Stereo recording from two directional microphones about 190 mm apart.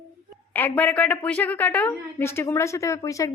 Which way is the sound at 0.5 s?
10° left (ahead or behind).